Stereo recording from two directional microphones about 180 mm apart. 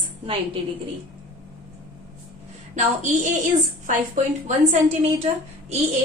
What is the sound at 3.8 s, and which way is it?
A woman's voice, 45° right (ahead or behind).